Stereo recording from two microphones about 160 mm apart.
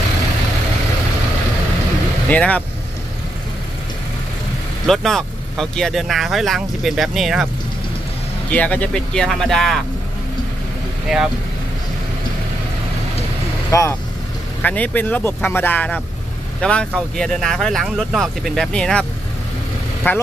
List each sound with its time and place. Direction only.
2.2 s speech: 10° left (ahead or behind)
4.8 s speech: centre (ahead or behind)
8.5 s speech: 10° left (ahead or behind)
11.1 s speech: centre (ahead or behind)
13.7 s speech: 20° left (ahead or behind)
20.1 s speech: 15° left (ahead or behind)